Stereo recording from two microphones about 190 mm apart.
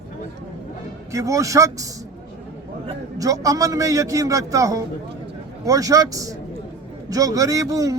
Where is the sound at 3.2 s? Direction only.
20° right (ahead or behind).